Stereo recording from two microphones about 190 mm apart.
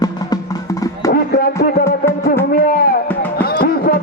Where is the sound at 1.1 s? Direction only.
55° left (ahead or behind).